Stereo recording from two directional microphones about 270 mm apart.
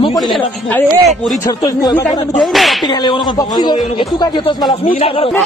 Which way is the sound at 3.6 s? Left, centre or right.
Centre.